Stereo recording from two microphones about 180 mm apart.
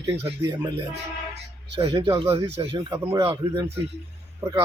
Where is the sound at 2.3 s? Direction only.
30° right (ahead or behind).